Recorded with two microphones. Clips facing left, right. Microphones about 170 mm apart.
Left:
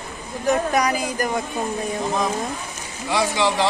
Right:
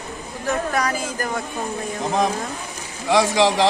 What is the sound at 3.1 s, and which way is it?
Speech, 90° right.